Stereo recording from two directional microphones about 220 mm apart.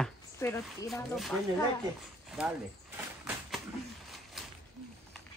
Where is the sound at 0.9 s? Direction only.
Centre (ahead or behind).